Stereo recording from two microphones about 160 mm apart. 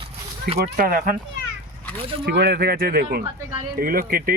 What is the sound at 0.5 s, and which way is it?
Speech, 65° right (ahead or behind).